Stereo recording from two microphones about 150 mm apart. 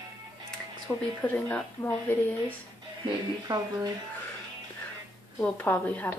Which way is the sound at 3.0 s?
30° right (ahead or behind).